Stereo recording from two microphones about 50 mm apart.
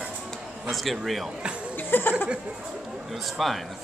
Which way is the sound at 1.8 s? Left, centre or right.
Left.